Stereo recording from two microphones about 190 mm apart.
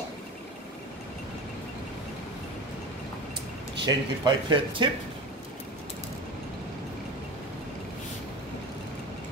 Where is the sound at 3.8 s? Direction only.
25° right (ahead or behind).